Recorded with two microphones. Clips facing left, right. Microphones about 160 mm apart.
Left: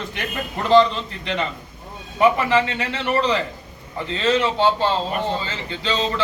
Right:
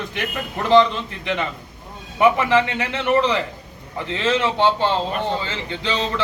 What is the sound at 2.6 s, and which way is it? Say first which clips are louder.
A man's voice: right 2 dB; 15° right (ahead or behind).